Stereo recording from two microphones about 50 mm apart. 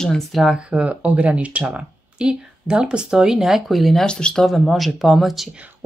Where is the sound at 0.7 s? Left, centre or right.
Right; by 4.0 s centre.